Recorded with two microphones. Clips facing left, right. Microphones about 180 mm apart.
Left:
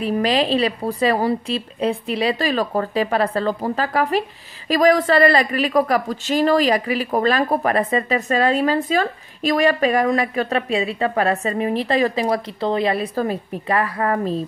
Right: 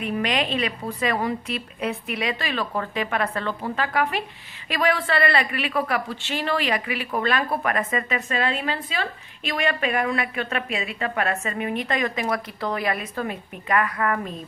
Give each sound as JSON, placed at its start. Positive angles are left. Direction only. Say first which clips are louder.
{"t": 0.0, "sound": "speech", "louder": "left 6 dB", "side_deg": 35}